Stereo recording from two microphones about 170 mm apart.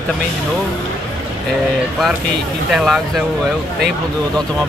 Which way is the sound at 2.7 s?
Centre (ahead or behind).